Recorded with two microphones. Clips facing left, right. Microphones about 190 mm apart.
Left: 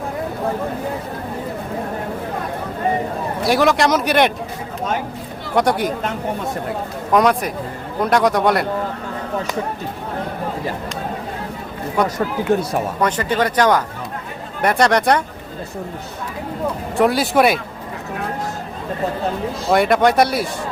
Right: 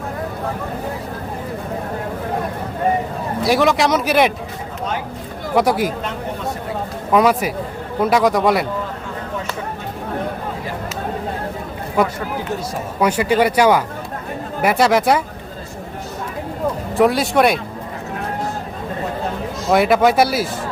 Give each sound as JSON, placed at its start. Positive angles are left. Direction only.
{"t": 3.4, "sound": "speech", "side_deg": 0}
{"t": 5.5, "sound": "speech", "side_deg": 0}
{"t": 7.1, "sound": "speech", "side_deg": -5}
{"t": 12.0, "sound": "speech", "side_deg": -5}
{"t": 12.5, "sound": "speech", "side_deg": 55}
{"t": 13.0, "sound": "speech", "side_deg": -10}
{"t": 17.0, "sound": "speech", "side_deg": 0}
{"t": 19.7, "sound": "speech", "side_deg": 0}